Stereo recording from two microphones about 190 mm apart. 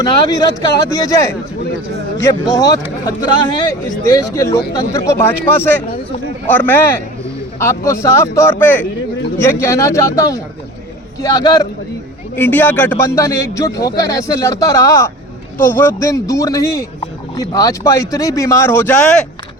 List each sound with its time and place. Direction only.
0.0 s speech: 20° left (ahead or behind)
4.1 s speech: 20° left (ahead or behind)